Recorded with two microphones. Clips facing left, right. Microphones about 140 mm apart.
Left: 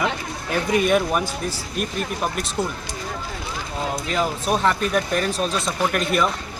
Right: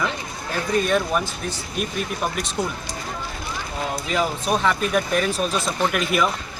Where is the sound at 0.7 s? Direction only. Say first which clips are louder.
Left 1 dB; 10° left (ahead or behind).